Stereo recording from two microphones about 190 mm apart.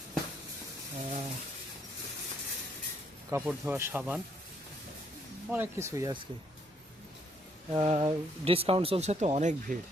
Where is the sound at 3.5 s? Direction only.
10° right (ahead or behind).